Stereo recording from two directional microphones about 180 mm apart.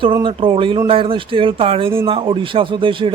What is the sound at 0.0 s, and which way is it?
A man's voice, 25° right (ahead or behind).